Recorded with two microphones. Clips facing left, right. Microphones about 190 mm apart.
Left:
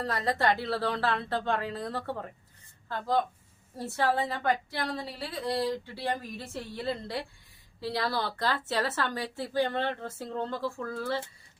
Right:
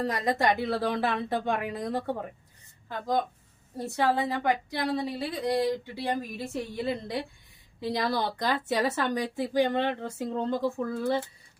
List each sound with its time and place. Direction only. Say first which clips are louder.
0.0 s a woman's voice: right 2 dB; 15° right (ahead or behind)
3.8 s a woman's voice: right 2 dB; 15° right (ahead or behind)